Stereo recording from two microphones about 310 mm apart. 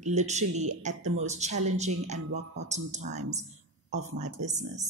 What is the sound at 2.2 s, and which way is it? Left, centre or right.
Speech, right.